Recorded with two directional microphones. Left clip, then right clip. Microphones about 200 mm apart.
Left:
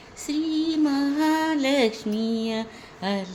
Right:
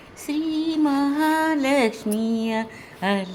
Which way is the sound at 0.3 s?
5° right (ahead or behind).